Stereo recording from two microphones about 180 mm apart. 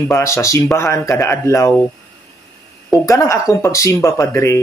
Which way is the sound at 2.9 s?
15° left (ahead or behind).